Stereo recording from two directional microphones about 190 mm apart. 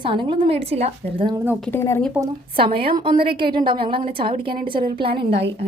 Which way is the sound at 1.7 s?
10° left (ahead or behind).